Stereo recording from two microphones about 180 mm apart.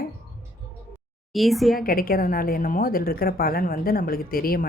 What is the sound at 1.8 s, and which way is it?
A woman's voice, 55° left (ahead or behind).